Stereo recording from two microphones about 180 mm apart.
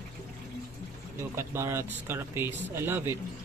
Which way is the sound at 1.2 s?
15° right (ahead or behind).